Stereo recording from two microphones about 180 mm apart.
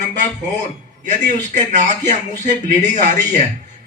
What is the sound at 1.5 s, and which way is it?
Speech, 45° right (ahead or behind).